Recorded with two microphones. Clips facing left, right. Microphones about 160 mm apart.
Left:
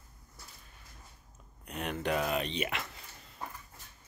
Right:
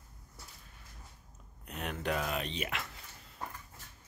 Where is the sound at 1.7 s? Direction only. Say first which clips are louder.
Left 3 dB; centre (ahead or behind).